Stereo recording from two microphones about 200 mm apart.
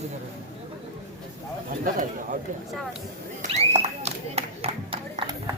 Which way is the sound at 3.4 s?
35° right (ahead or behind).